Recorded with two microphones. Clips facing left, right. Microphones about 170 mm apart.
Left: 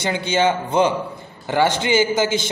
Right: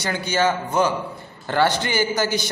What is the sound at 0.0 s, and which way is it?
A man's voice, 25° left (ahead or behind).